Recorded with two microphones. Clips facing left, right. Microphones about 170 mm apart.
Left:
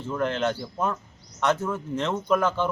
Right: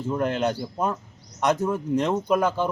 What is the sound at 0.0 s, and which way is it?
Speech, 10° right (ahead or behind).